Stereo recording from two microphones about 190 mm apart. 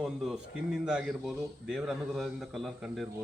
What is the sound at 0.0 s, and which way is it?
Speech, centre (ahead or behind).